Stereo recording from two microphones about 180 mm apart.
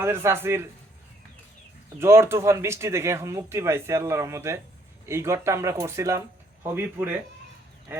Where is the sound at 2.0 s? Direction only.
15° right (ahead or behind).